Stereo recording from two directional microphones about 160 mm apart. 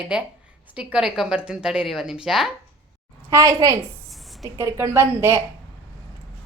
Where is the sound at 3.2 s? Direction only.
20° right (ahead or behind).